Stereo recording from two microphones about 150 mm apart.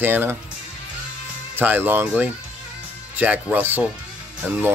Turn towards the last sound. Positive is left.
turn(degrees=-10)  # may be behind; listen again after turning